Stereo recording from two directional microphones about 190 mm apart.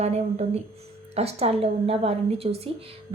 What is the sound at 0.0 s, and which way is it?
A woman's voice, 35° right (ahead or behind).